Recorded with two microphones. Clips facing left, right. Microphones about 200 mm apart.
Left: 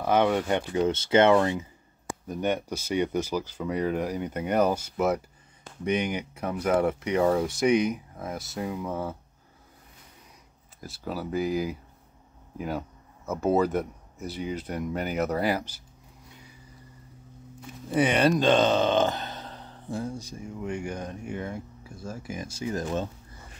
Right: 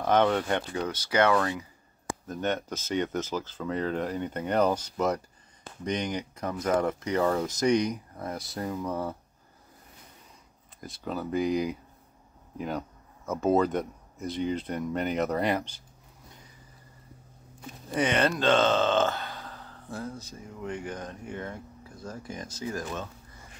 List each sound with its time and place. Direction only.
0.0 s speech: 10° left (ahead or behind)
0.8 s speech: 25° left (ahead or behind)
2.2 s speech: 10° left (ahead or behind)
10.8 s speech: 5° left (ahead or behind)
17.9 s speech: 10° left (ahead or behind)